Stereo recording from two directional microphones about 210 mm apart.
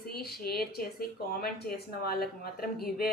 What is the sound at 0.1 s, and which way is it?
Speech, 45° left (ahead or behind).